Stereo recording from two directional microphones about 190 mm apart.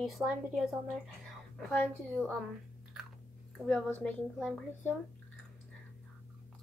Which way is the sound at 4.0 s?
5° left (ahead or behind).